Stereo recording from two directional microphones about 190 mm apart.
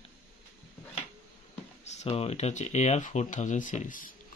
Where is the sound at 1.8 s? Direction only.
35° left (ahead or behind).